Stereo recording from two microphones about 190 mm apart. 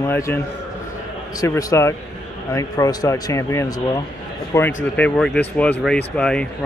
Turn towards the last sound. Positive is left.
turn(degrees=5)  # may be behind; listen again after turning